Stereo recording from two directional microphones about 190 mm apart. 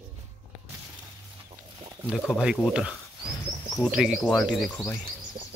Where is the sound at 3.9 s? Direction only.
5° right (ahead or behind).